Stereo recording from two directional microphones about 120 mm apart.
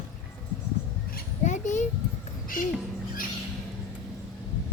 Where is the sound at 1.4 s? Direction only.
90° left.